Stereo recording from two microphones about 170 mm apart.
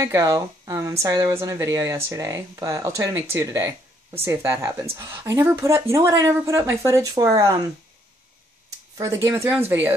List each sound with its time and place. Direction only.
0.0 s a woman's voice: 20° right (ahead or behind)
8.9 s a woman's voice: 20° right (ahead or behind)